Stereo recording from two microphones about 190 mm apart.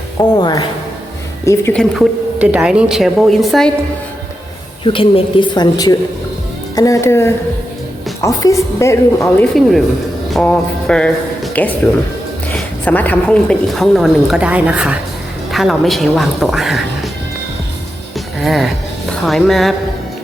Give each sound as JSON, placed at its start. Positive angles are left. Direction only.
{"t": 0.2, "sound": "speech", "side_deg": 20}
{"t": 1.7, "sound": "a woman's voice", "side_deg": 5}
{"t": 4.8, "sound": "a woman's voice", "side_deg": 30}
{"t": 10.2, "sound": "a woman's voice", "side_deg": 5}
{"t": 18.3, "sound": "a woman's voice", "side_deg": 0}